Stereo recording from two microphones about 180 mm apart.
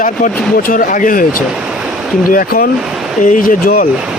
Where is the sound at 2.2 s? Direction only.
50° left (ahead or behind).